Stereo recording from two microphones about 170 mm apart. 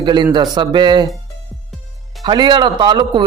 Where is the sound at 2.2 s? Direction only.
25° right (ahead or behind).